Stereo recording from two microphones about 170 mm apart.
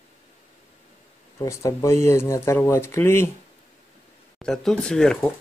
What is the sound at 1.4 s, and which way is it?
Speech, 20° left (ahead or behind).